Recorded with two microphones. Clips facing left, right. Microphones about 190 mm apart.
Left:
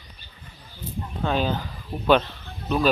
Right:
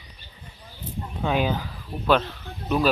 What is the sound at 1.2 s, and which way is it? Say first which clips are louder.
Speech: right 1 dB; 10° right (ahead or behind).